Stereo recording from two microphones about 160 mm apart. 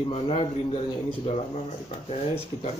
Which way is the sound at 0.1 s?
40° left (ahead or behind).